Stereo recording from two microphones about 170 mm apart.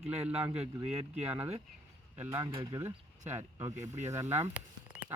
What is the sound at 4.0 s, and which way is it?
Speech, 45° right (ahead or behind).